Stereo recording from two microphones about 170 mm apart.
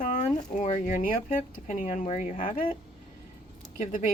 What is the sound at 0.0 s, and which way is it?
Speech, 50° left (ahead or behind).